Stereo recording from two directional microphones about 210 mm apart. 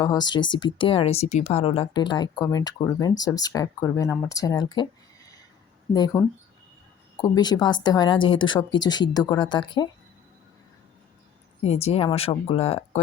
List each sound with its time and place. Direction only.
0.0 s speech: 20° left (ahead or behind)
11.6 s speech: 30° left (ahead or behind)